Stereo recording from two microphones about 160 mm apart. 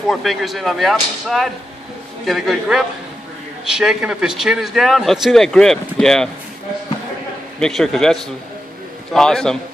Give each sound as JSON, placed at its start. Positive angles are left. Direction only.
{"t": 0.1, "sound": "a man's voice", "side_deg": 0}
{"t": 7.6, "sound": "a man's voice", "side_deg": 0}